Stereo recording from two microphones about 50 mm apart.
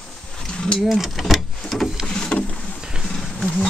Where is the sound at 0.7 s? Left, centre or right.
Centre.